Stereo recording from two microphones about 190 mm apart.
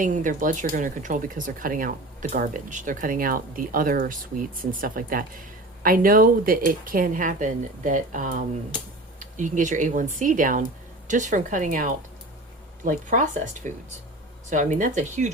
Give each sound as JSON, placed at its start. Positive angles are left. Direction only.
{"t": 0.0, "sound": "speech", "side_deg": -45}